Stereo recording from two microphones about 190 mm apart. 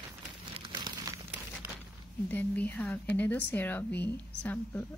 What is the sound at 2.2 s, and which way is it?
Speech, 10° left (ahead or behind).